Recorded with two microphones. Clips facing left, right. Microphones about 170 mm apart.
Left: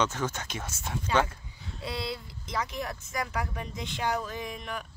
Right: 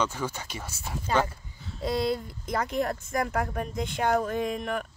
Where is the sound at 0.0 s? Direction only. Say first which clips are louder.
Even; 10° right (ahead or behind).